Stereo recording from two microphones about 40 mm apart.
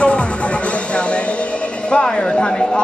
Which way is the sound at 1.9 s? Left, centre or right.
Centre.